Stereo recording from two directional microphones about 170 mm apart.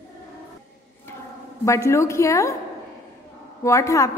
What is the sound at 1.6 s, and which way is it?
Speech, 15° left (ahead or behind).